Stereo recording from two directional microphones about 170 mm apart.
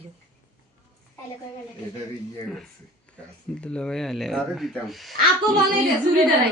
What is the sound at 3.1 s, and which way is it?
A man's voice, 5° left (ahead or behind).